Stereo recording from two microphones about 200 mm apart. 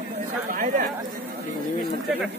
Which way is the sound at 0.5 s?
45° right (ahead or behind).